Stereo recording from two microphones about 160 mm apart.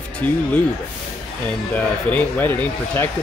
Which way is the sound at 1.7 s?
10° left (ahead or behind).